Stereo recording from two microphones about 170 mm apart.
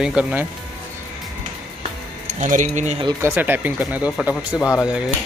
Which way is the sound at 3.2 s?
15° right (ahead or behind).